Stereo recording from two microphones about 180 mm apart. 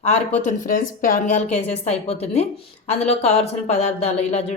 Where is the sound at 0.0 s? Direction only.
40° left (ahead or behind).